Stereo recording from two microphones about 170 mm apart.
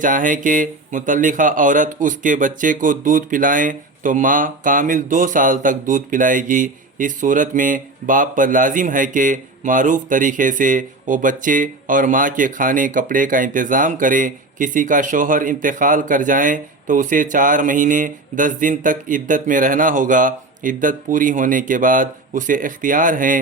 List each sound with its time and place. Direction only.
0.0 s speech: 50° right (ahead or behind)